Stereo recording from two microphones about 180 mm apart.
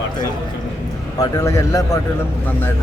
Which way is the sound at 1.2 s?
15° left (ahead or behind).